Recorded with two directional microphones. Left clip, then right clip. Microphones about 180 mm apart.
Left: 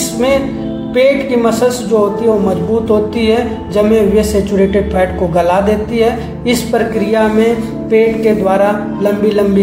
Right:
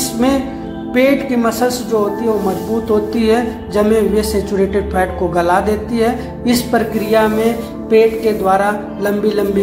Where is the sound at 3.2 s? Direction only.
40° right (ahead or behind).